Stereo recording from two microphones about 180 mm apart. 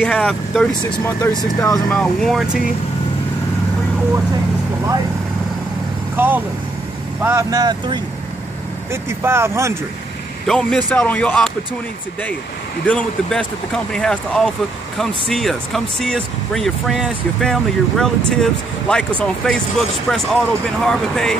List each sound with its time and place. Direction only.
0.0 s speech: 5° left (ahead or behind)
1.3 s speech: 20° left (ahead or behind)
2.0 s speech: centre (ahead or behind)
6.1 s speech: 10° right (ahead or behind)
10.4 s speech: centre (ahead or behind)
12.8 s speech: 5° left (ahead or behind)